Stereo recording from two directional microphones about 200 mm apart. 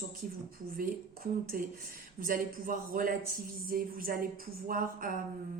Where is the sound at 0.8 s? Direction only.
45° right (ahead or behind).